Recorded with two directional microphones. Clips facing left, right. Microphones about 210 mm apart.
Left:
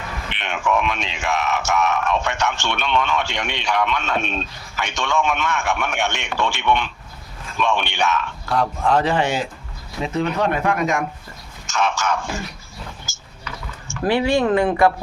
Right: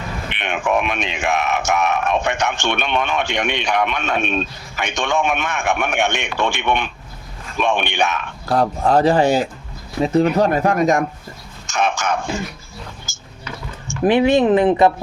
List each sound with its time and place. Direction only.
0.3 s speech: 15° right (ahead or behind)
8.4 s speech: 40° right (ahead or behind)
11.7 s speech: 15° right (ahead or behind)
13.8 s speech: 15° right (ahead or behind)